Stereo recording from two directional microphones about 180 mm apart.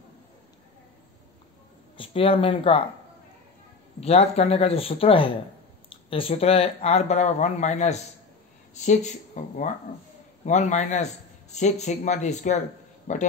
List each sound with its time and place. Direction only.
2.0 s speech: 30° left (ahead or behind)
4.0 s speech: 35° left (ahead or behind)